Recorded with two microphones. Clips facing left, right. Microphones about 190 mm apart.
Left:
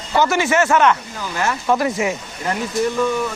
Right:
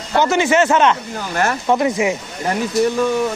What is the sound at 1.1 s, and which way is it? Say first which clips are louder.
Speech: right 3 dB; 45° right (ahead or behind).